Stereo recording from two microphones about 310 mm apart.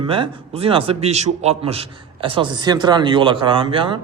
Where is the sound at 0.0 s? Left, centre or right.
Centre.